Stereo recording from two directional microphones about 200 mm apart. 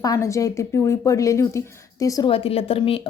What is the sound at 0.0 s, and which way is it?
A woman's voice, 15° left (ahead or behind).